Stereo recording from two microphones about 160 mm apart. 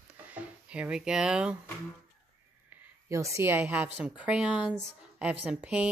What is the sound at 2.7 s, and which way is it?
A woman's voice, 15° right (ahead or behind).